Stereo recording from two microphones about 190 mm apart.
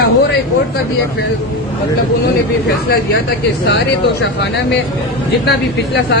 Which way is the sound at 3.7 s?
70° left (ahead or behind).